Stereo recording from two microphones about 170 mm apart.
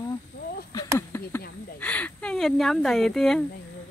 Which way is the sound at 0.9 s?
15° left (ahead or behind).